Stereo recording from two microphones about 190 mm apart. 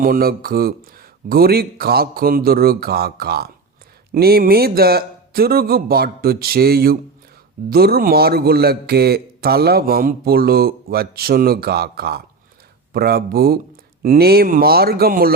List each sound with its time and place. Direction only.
0.0 s a man's voice: 50° right (ahead or behind)